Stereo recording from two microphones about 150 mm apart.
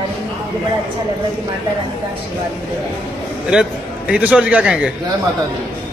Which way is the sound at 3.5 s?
5° right (ahead or behind).